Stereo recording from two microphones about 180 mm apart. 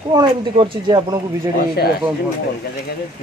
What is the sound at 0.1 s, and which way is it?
Speech, 25° right (ahead or behind).